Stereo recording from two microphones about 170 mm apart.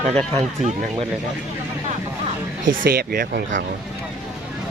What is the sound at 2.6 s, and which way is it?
Speech, 60° right (ahead or behind).